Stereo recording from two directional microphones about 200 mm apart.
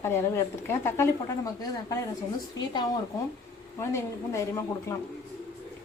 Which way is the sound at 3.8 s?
15° left (ahead or behind).